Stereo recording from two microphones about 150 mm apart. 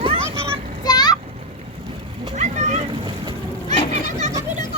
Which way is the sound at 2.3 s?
50° right (ahead or behind).